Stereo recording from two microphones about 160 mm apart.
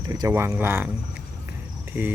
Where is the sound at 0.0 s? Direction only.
25° right (ahead or behind).